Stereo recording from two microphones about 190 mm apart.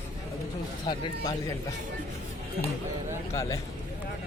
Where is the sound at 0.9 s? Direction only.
20° left (ahead or behind).